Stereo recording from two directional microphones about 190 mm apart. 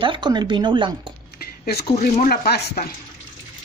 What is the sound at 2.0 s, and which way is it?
Speech, 55° left (ahead or behind).